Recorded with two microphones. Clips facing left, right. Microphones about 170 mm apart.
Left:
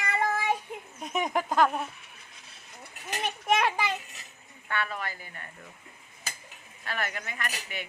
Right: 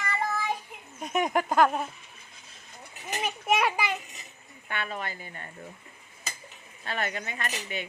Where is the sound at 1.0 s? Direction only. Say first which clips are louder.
Right 3 dB; centre (ahead or behind).